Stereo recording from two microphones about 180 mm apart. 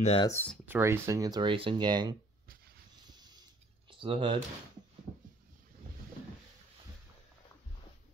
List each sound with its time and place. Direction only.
0.0 s speech: 35° left (ahead or behind)
0.3 s speech: 10° left (ahead or behind)
0.7 s speech: 15° right (ahead or behind)
3.1 s a sound: 25° right (ahead or behind)
3.9 s speech: 30° right (ahead or behind)